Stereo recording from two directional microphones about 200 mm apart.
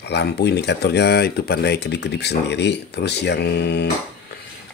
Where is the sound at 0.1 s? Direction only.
55° left (ahead or behind).